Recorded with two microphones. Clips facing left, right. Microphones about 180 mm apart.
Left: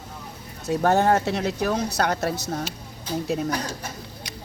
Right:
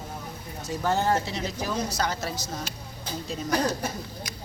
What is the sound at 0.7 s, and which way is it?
Speech, 65° left (ahead or behind).